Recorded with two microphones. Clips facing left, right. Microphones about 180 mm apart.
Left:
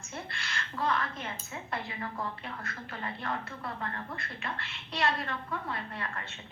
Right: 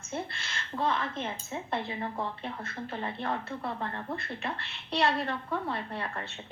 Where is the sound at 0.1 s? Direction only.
25° right (ahead or behind).